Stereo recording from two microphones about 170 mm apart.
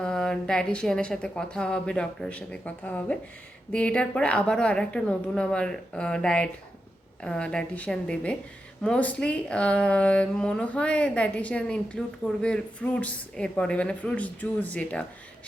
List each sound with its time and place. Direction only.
0.0 s speech: 5° left (ahead or behind)